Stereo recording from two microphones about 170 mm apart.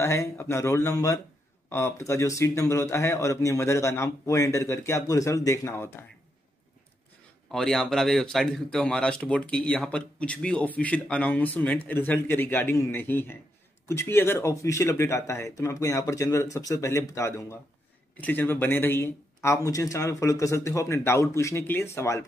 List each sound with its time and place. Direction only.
0.0 s speech: 15° left (ahead or behind)
7.5 s speech: centre (ahead or behind)